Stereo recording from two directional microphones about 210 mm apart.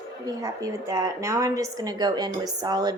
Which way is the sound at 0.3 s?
15° right (ahead or behind).